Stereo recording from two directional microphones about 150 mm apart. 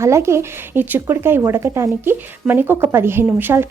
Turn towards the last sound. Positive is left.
turn(degrees=-15)  # may be behind; listen again after turning